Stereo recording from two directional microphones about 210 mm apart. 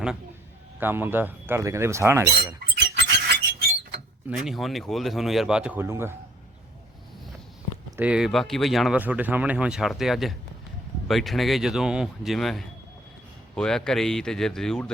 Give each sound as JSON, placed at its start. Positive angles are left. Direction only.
{"t": 0.8, "sound": "speech", "side_deg": -10}
{"t": 2.9, "sound": "a sound", "side_deg": -50}
{"t": 4.3, "sound": "speech", "side_deg": 0}
{"t": 7.9, "sound": "speech", "side_deg": -10}